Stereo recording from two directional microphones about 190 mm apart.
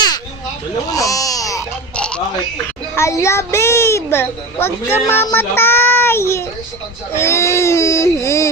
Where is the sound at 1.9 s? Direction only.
5° left (ahead or behind).